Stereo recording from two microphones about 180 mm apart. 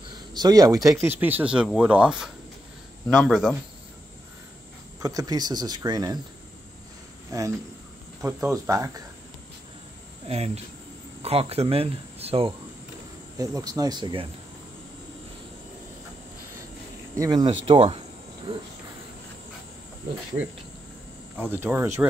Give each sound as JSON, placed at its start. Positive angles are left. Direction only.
{"t": 0.3, "sound": "speech", "side_deg": -20}
{"t": 5.0, "sound": "speech", "side_deg": -20}
{"t": 7.2, "sound": "speech", "side_deg": -20}
{"t": 10.2, "sound": "speech", "side_deg": -35}
{"t": 13.4, "sound": "speech", "side_deg": -20}
{"t": 17.1, "sound": "speech", "side_deg": -20}
{"t": 21.4, "sound": "speech", "side_deg": -10}